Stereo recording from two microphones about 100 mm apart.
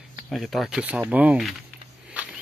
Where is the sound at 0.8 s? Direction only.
15° right (ahead or behind).